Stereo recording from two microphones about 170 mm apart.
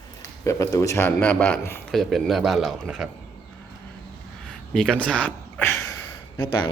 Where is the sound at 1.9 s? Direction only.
Centre (ahead or behind).